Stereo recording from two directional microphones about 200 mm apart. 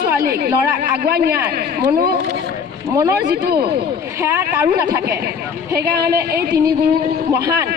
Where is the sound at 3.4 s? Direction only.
50° right (ahead or behind).